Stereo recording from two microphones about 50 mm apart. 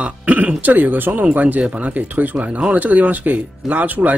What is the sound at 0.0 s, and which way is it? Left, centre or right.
Speech, right.